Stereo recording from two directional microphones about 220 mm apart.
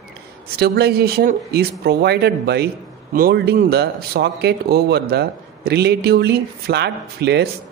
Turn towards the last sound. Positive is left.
turn(degrees=-50)  # may be behind; listen again after turning